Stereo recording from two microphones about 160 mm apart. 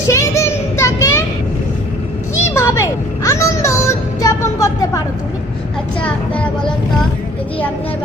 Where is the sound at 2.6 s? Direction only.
15° left (ahead or behind).